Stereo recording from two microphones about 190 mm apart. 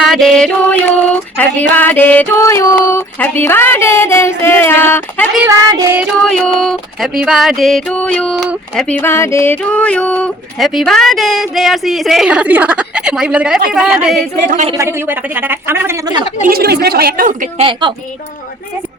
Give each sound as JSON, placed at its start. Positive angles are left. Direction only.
{"t": 0.0, "sound": "music", "side_deg": 0}
{"t": 1.5, "sound": "speech", "side_deg": 10}
{"t": 5.5, "sound": "a woman's voice", "side_deg": -20}
{"t": 6.6, "sound": "speech", "side_deg": 0}
{"t": 14.4, "sound": "a woman's voice", "side_deg": -40}
{"t": 14.8, "sound": "a woman's voice", "side_deg": -10}
{"t": 16.5, "sound": "speech", "side_deg": -55}
{"t": 17.6, "sound": "speech", "side_deg": -25}